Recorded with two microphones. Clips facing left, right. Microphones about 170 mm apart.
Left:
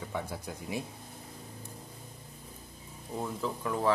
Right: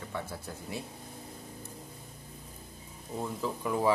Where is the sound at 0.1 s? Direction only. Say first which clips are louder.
Left 1 dB; 15° left (ahead or behind).